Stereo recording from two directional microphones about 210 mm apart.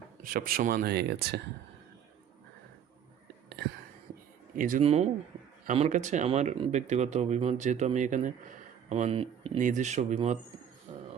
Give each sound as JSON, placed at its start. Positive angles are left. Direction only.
{"t": 0.2, "sound": "speech", "side_deg": -45}
{"t": 4.5, "sound": "speech", "side_deg": -40}
{"t": 4.8, "sound": "speech", "side_deg": -30}